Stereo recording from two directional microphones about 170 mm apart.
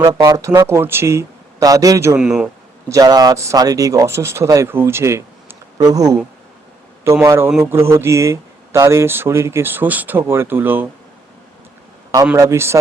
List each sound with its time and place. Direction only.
0.0 s speech: 25° right (ahead or behind)
2.1 s speech: 5° right (ahead or behind)
2.9 s speech: 20° right (ahead or behind)
12.4 s speech: 15° right (ahead or behind)